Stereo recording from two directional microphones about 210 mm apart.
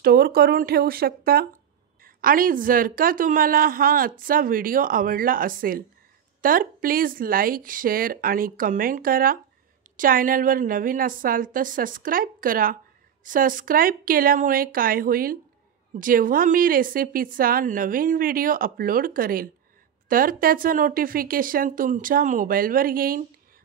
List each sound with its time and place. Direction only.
0.0 s a woman's voice: 45° right (ahead or behind)